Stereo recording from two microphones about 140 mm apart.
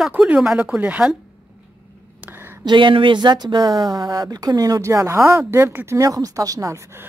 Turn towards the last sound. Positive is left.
turn(degrees=-20)  # may be behind; listen again after turning